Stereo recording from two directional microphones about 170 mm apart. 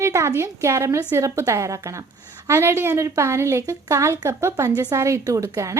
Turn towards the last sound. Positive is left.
turn(degrees=-15)  # may be behind; listen again after turning